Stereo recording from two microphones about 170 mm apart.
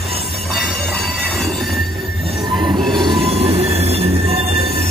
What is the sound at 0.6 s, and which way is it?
Train wheels squealing, centre (ahead or behind).